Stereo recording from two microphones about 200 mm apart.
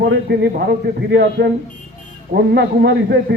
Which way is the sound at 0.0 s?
55° right (ahead or behind).